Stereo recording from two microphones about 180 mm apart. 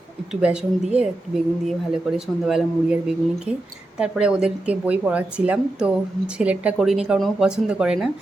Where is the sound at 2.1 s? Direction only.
5° right (ahead or behind).